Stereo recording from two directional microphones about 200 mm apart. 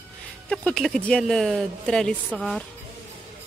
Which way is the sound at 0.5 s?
5° left (ahead or behind).